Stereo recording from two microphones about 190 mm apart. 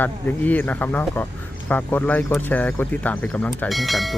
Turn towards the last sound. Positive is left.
turn(degrees=0)  # may be behind; listen again after turning